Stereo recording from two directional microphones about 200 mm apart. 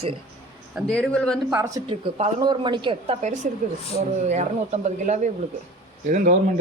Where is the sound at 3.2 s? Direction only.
35° right (ahead or behind).